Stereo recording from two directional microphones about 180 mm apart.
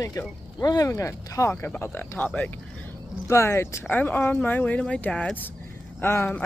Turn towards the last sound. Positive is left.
turn(degrees=10)  # may be behind; listen again after turning